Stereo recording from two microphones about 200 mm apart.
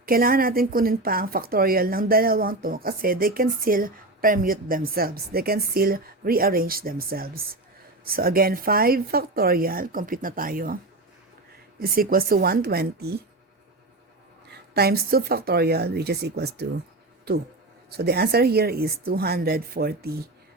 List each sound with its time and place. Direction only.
0.0 s a woman's voice: 45° right (ahead or behind)
11.8 s a woman's voice: 45° right (ahead or behind)
14.7 s a woman's voice: 50° right (ahead or behind)
17.9 s a woman's voice: 55° right (ahead or behind)